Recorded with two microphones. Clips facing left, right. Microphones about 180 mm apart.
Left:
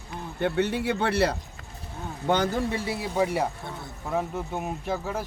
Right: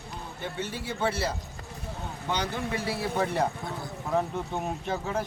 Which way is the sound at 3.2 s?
10° left (ahead or behind).